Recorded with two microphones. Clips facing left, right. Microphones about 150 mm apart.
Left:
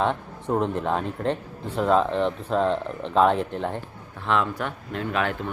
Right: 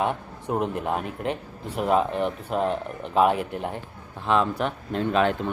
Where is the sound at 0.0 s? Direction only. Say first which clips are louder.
Left 1 dB; 10° right (ahead or behind).